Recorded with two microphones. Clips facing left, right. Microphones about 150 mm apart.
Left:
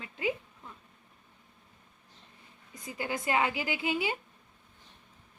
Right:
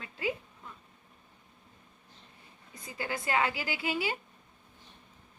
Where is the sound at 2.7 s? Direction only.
20° left (ahead or behind).